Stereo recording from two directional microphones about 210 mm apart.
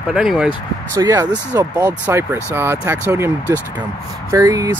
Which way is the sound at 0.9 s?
15° right (ahead or behind).